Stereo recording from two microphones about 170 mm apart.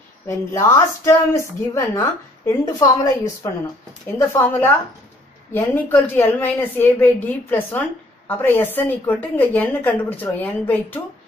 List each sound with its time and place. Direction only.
0.3 s a woman's voice: 15° left (ahead or behind)
4.2 s a woman's voice: 15° left (ahead or behind)